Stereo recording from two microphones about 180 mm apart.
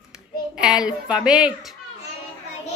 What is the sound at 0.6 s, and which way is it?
A woman's voice, 5° right (ahead or behind).